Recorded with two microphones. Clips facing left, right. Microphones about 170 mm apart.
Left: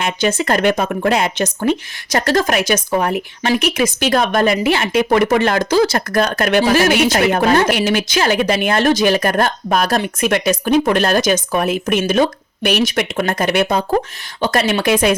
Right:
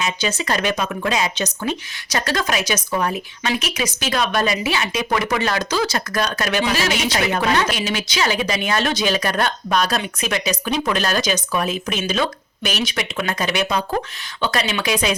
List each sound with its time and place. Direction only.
0.0 s speech: 55° left (ahead or behind)